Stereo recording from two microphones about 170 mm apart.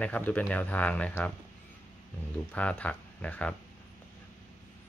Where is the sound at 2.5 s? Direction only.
10° left (ahead or behind).